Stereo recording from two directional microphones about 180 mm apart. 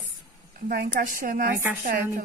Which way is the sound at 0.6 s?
50° right (ahead or behind).